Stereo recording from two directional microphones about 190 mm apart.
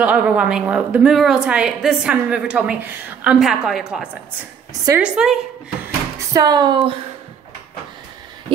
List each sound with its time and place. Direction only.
0.0 s a woman's voice: 5° right (ahead or behind)
6.1 s speech: 20° right (ahead or behind)